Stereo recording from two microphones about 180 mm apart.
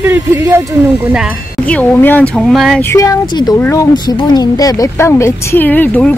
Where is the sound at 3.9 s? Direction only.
25° left (ahead or behind).